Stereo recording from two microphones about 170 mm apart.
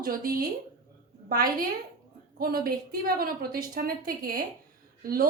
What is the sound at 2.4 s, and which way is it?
A woman's voice, 60° right (ahead or behind).